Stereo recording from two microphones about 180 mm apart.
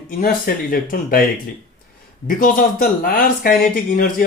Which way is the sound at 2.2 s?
50° left (ahead or behind).